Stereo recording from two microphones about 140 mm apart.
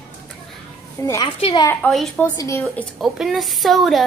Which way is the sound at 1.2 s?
35° left (ahead or behind).